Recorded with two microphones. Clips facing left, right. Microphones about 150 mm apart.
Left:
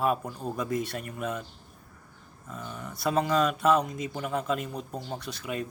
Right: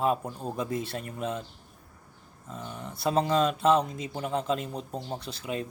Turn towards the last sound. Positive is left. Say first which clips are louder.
# even
turn(degrees=-30)  # may be behind; listen again after turning